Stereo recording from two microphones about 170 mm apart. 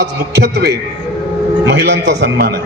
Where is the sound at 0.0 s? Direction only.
80° right.